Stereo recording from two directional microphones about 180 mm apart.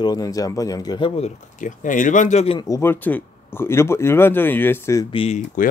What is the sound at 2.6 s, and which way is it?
Speech, 15° left (ahead or behind).